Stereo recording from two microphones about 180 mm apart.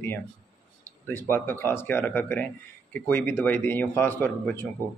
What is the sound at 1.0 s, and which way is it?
Speech, 10° left (ahead or behind).